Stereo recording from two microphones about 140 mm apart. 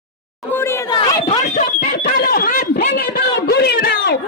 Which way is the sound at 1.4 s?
60° left (ahead or behind).